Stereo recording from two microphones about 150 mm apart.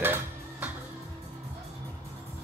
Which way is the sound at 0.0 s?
15° right (ahead or behind).